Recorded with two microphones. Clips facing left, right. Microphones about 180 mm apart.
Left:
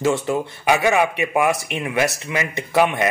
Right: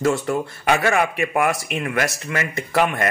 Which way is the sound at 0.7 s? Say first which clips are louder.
Left 2 dB; 15° left (ahead or behind).